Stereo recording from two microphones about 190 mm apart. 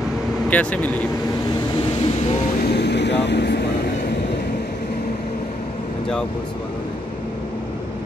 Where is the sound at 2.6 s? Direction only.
60° left (ahead or behind).